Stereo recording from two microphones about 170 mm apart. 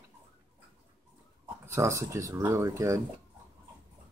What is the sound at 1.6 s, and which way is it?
Speech, 15° right (ahead or behind).